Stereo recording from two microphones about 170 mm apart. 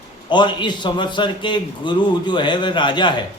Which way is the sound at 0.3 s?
25° left (ahead or behind).